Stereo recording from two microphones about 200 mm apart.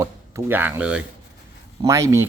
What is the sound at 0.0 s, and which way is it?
Speech, 15° right (ahead or behind).